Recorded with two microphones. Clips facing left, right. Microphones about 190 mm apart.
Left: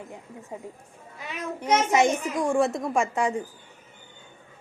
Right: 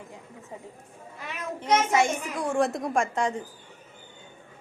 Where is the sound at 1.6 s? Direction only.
10° left (ahead or behind).